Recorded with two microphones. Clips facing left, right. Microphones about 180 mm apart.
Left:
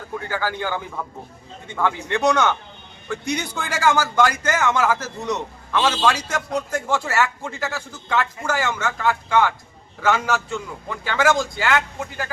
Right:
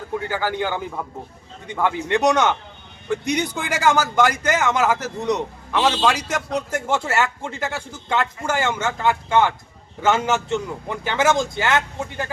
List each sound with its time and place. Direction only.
0.3 s a man's voice: 15° right (ahead or behind)